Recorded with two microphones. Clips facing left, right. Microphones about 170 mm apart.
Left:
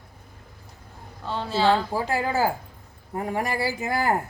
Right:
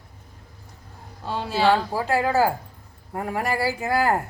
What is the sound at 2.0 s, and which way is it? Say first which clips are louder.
Speech: right 6 dB; 20° left (ahead or behind).